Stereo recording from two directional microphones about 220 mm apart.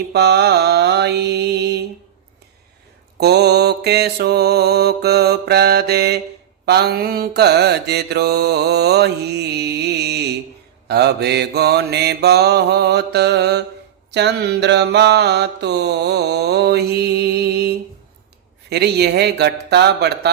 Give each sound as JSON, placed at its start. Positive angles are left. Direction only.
{"t": 0.1, "sound": "mantra", "side_deg": -50}
{"t": 3.2, "sound": "mantra", "side_deg": -50}
{"t": 18.7, "sound": "mantra", "side_deg": -45}